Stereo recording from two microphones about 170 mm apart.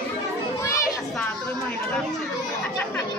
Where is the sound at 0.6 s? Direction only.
20° left (ahead or behind).